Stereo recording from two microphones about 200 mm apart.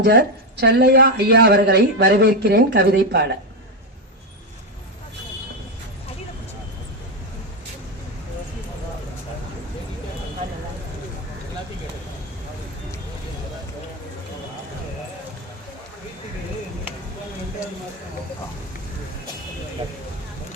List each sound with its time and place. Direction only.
0.0 s a woman's voice: 55° right (ahead or behind)